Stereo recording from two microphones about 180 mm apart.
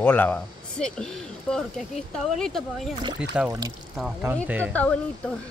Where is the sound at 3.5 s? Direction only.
20° right (ahead or behind).